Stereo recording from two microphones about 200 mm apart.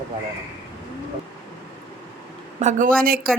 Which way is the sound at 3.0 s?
50° right (ahead or behind).